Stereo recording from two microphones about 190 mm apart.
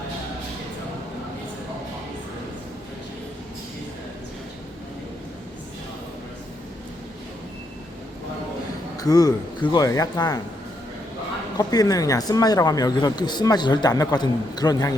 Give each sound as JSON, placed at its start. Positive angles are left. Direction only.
{"t": 9.0, "sound": "speech", "side_deg": 20}
{"t": 11.5, "sound": "speech", "side_deg": 20}